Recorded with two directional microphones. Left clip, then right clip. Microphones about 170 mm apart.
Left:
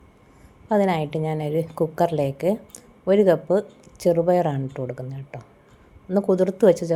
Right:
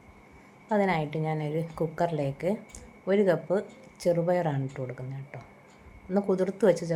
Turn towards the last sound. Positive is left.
turn(degrees=30)  # may be behind; listen again after turning